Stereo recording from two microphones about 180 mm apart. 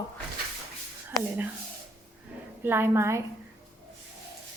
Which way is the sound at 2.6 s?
10° right (ahead or behind).